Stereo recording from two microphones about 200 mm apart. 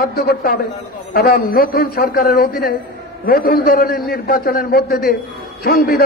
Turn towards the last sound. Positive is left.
turn(degrees=50)  # may be behind; listen again after turning